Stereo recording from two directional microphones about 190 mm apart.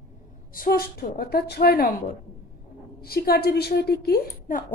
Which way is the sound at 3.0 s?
55° left (ahead or behind).